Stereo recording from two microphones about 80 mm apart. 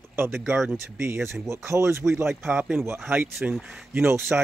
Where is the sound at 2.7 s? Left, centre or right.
Right.